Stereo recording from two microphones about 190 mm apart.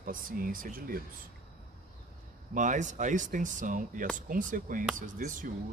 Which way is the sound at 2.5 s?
40° right (ahead or behind).